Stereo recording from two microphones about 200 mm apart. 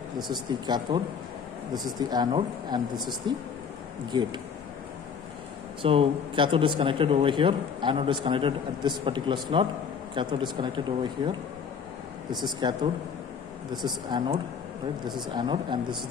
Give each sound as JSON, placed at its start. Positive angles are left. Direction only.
{"t": 0.3, "sound": "a man's voice", "side_deg": -20}
{"t": 4.1, "sound": "a man's voice", "side_deg": -20}
{"t": 5.8, "sound": "a man's voice", "side_deg": -25}
{"t": 13.8, "sound": "a man's voice", "side_deg": -20}